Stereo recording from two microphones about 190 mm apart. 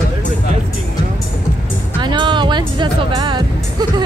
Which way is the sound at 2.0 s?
25° right (ahead or behind).